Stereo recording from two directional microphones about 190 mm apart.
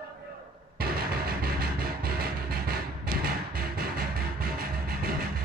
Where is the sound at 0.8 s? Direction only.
55° right (ahead or behind).